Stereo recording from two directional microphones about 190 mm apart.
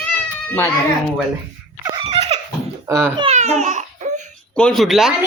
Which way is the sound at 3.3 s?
35° right (ahead or behind).